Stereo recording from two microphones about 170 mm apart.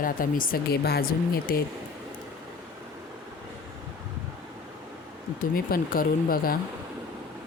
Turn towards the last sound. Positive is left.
turn(degrees=60)  # may be behind; listen again after turning